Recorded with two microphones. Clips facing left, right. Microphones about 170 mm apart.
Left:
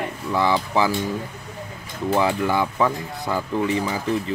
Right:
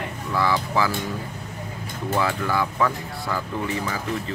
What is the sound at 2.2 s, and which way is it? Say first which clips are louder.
Speech: left 3 dB; 20° left (ahead or behind).